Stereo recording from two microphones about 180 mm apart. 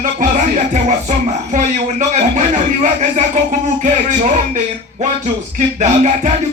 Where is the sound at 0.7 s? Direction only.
40° right (ahead or behind).